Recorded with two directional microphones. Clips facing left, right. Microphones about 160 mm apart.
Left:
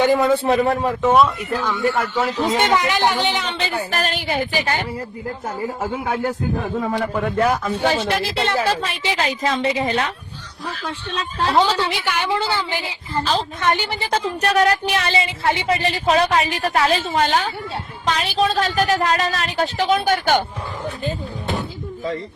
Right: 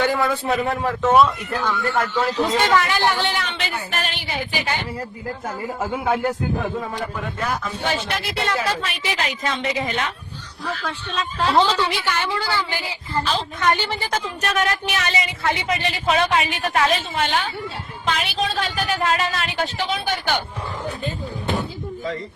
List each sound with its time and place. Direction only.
0.0 s speech: 20° left (ahead or behind)
0.4 s speech: 35° left (ahead or behind)
1.1 s speech: centre (ahead or behind)
1.7 s a woman's voice: 15° left (ahead or behind)
3.4 s a woman's voice: 30° left (ahead or behind)
7.9 s speech: 30° left (ahead or behind)
11.5 s a woman's voice: 10° left (ahead or behind)
14.1 s speech: 35° left (ahead or behind)